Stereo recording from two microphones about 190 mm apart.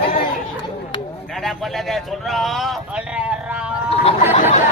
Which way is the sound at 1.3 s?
Centre (ahead or behind).